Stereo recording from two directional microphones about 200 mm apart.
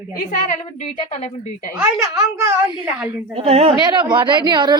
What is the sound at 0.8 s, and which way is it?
Speech, 35° left (ahead or behind).